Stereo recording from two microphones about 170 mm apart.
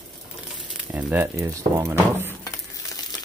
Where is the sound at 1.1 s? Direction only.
10° right (ahead or behind).